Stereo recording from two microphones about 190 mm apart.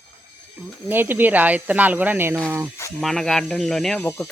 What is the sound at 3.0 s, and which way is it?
Speech, centre (ahead or behind).